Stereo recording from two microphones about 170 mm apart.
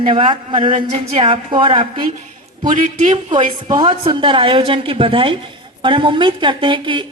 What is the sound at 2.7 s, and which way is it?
Speech, 50° right (ahead or behind).